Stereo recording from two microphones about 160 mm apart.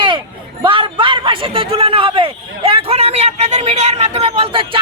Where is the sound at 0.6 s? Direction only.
30° right (ahead or behind).